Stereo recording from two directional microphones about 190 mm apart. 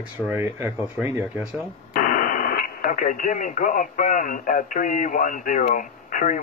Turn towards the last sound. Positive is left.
turn(degrees=45)  # may be behind; listen again after turning